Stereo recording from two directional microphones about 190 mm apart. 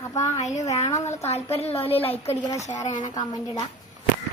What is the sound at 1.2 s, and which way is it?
A woman's voice, 35° left (ahead or behind).